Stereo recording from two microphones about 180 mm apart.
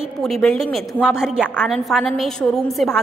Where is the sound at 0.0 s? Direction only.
Centre (ahead or behind).